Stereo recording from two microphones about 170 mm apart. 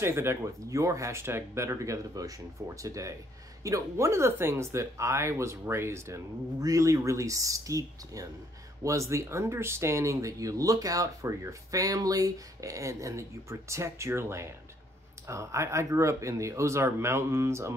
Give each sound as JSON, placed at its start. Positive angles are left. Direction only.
{"t": 0.0, "sound": "speech", "side_deg": -15}